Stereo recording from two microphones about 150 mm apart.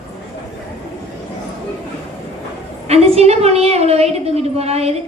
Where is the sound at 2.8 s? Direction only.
45° right (ahead or behind).